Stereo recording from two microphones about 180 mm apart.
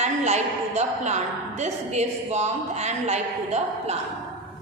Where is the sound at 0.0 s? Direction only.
40° right (ahead or behind).